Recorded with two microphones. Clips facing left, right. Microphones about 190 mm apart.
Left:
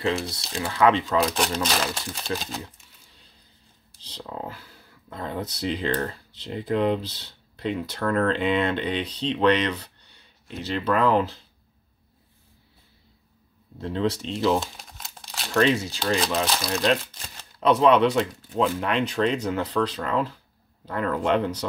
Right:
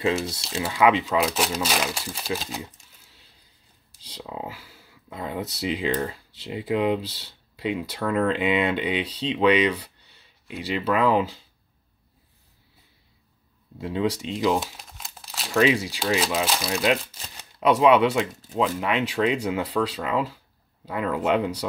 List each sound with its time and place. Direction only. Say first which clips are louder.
0.4 s speech: left 1 dB; 5° right (ahead or behind)
13.7 s speech: even; 10° right (ahead or behind)